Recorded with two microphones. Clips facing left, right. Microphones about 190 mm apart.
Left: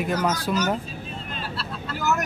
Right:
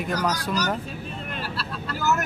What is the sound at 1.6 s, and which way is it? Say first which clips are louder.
Vehicle: even; 15° left (ahead or behind).